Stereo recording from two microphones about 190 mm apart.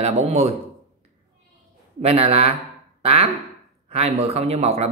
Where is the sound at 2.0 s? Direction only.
30° right (ahead or behind).